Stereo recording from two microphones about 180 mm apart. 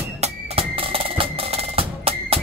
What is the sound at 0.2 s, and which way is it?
Music, 30° right (ahead or behind).